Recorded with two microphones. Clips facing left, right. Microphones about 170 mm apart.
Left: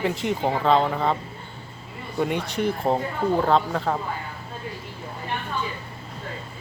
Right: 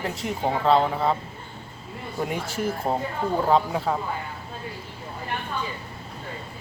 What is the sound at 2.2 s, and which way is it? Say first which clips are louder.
Speech: left 4 dB; 5° right (ahead or behind).